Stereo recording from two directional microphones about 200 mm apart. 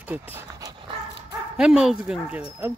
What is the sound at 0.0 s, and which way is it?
Speech, 10° right (ahead or behind).